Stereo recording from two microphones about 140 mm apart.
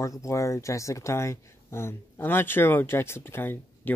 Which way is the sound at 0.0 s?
20° left (ahead or behind).